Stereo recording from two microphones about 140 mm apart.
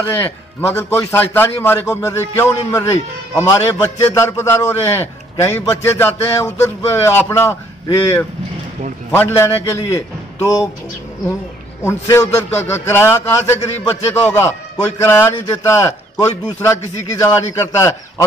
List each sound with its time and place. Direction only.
0.0 s a man's voice: 15° left (ahead or behind)
11.8 s a man's voice: 20° left (ahead or behind)